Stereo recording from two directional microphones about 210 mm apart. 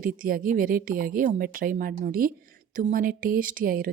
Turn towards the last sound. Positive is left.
turn(degrees=-40)  # may be behind; listen again after turning